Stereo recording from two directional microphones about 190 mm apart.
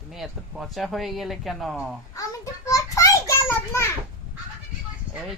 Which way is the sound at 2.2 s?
15° left (ahead or behind).